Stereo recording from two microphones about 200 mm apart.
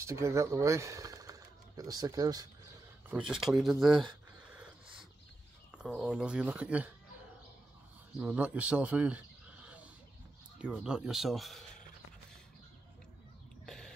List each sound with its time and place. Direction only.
0.0 s speech: 15° right (ahead or behind)
3.1 s speech: 5° right (ahead or behind)
5.8 s speech: 5° right (ahead or behind)
8.2 s speech: 5° right (ahead or behind)
13.7 s a sound: centre (ahead or behind)